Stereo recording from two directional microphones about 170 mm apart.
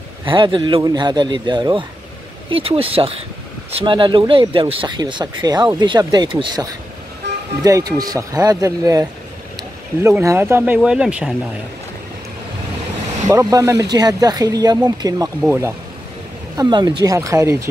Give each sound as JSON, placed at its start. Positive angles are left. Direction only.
{"t": 0.3, "sound": "speech", "side_deg": -30}
{"t": 7.2, "sound": "vehicle", "side_deg": -80}
{"t": 7.6, "sound": "speech", "side_deg": -20}
{"t": 10.0, "sound": "speech", "side_deg": -15}
{"t": 13.3, "sound": "speech", "side_deg": -20}
{"t": 16.5, "sound": "speech", "side_deg": -25}